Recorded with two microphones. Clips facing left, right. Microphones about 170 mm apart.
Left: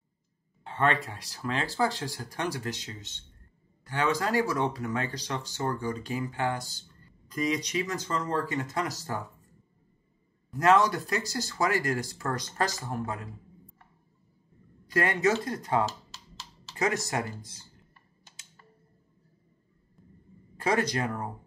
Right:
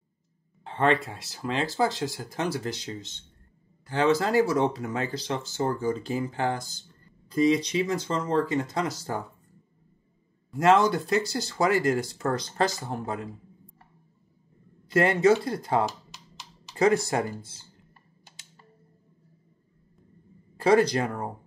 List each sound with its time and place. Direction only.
0.7 s speech: 25° right (ahead or behind)
10.5 s speech: 25° right (ahead or behind)
14.9 s speech: 30° right (ahead or behind)
15.8 s computer keyboard: 15° right (ahead or behind)
16.7 s speech: 30° right (ahead or behind)
20.6 s speech: 30° right (ahead or behind)